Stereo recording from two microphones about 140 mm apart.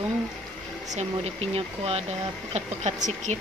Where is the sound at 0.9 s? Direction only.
50° right (ahead or behind).